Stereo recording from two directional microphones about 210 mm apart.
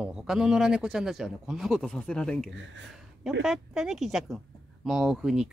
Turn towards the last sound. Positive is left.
turn(degrees=-5)  # may be behind; listen again after turning